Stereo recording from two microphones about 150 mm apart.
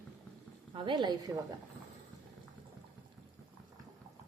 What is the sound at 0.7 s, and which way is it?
Speech, 35° right (ahead or behind).